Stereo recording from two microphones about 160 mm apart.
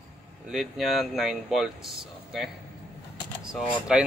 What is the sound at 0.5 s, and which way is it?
Speech, centre (ahead or behind).